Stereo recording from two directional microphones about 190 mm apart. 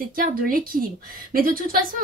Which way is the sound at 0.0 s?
50° right (ahead or behind).